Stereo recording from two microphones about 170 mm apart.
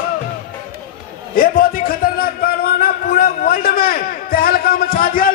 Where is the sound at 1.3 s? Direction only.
60° left (ahead or behind).